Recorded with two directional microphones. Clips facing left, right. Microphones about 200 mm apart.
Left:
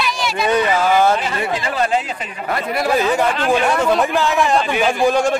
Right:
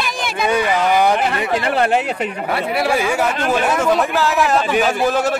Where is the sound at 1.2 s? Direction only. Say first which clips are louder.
Right 3 dB; 60° right (ahead or behind).